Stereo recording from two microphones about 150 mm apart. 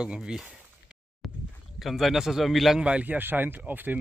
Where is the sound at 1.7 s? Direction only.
Centre (ahead or behind).